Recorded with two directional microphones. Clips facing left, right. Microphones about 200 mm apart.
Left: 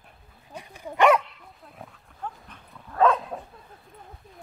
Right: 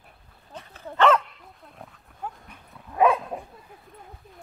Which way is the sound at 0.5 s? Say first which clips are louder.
Even; 15° left (ahead or behind).